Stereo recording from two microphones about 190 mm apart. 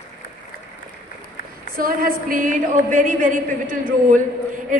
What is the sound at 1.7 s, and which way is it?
A woman's voice, 50° right (ahead or behind).